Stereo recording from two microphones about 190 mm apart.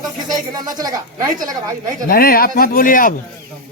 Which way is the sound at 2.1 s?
50° left (ahead or behind).